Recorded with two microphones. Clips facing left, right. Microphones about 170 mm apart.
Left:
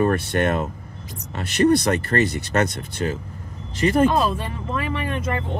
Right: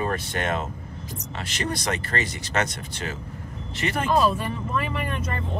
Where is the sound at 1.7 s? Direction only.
60° left (ahead or behind).